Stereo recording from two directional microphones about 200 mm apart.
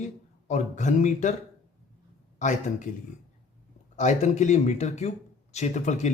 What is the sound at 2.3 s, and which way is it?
Speech, 40° left (ahead or behind).